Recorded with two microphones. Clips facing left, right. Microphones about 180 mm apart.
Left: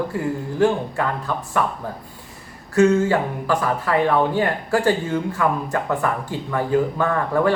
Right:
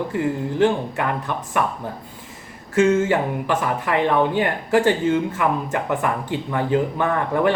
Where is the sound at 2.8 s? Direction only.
20° right (ahead or behind).